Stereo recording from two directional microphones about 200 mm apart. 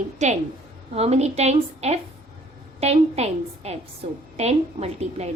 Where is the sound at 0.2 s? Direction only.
35° right (ahead or behind).